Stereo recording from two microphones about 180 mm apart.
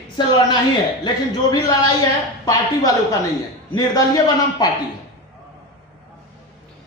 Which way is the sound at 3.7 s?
20° left (ahead or behind).